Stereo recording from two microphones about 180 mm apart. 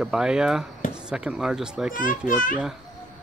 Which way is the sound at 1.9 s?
50° left (ahead or behind).